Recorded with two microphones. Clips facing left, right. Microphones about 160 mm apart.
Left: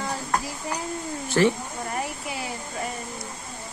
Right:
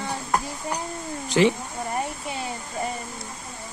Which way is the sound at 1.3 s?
15° right (ahead or behind).